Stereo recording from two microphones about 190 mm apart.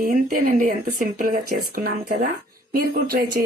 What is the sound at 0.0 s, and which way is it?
Speech, 45° right (ahead or behind).